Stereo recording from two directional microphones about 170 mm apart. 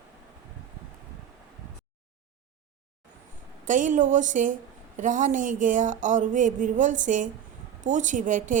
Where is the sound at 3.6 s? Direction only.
50° right (ahead or behind).